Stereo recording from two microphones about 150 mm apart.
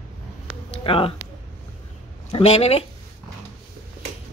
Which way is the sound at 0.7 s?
35° left (ahead or behind).